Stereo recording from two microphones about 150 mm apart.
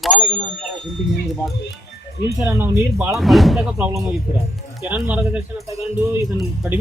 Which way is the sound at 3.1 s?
Centre (ahead or behind).